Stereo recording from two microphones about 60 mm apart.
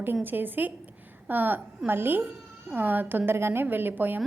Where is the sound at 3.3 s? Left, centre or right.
Right.